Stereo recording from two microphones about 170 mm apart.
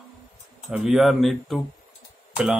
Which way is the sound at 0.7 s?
5° right (ahead or behind).